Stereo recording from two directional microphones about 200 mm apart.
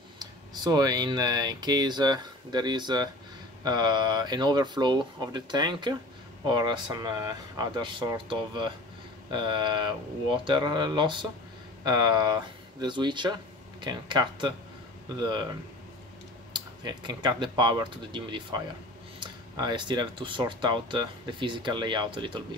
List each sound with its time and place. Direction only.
0.2 s speech: 20° right (ahead or behind)
16.5 s speech: 20° right (ahead or behind)